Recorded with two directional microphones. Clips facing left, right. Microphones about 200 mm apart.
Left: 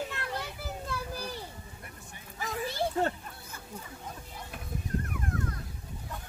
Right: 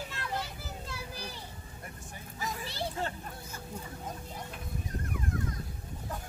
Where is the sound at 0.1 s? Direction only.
55° left (ahead or behind).